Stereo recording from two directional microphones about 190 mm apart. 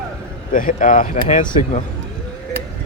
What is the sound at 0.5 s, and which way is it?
Speech, 45° left (ahead or behind).